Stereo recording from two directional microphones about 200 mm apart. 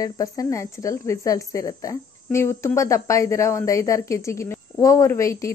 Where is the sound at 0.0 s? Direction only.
15° left (ahead or behind).